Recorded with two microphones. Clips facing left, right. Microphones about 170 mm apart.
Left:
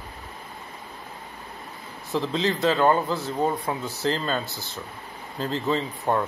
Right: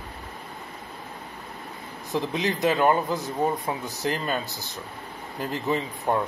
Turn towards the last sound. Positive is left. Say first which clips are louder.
# left 1 dB
turn(degrees=-15)  # may be behind; listen again after turning